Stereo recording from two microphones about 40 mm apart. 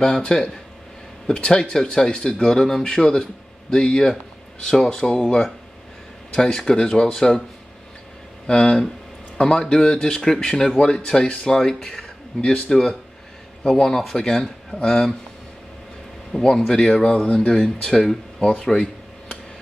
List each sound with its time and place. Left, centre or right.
0.0 s speech: centre
6.3 s speech: centre
8.5 s speech: left
16.3 s speech: centre